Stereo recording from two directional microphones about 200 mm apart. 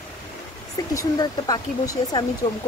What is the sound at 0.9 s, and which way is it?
Speech, 20° left (ahead or behind).